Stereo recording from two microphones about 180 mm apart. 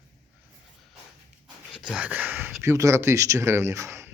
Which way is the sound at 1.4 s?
Centre (ahead or behind).